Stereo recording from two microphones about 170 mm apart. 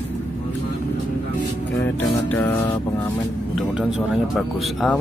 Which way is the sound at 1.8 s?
10° left (ahead or behind).